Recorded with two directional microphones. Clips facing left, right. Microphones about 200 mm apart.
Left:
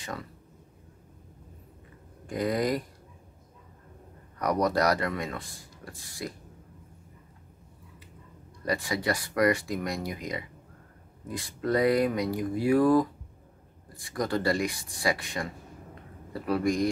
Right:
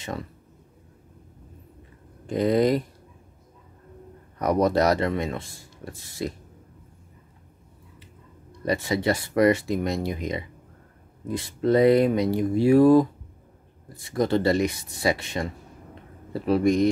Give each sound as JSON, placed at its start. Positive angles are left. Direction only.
{"t": 2.2, "sound": "speech", "side_deg": -25}
{"t": 4.4, "sound": "speech", "side_deg": -25}
{"t": 8.6, "sound": "speech", "side_deg": -25}